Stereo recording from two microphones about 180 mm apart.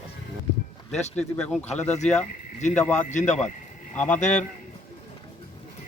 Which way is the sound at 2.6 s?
40° left (ahead or behind).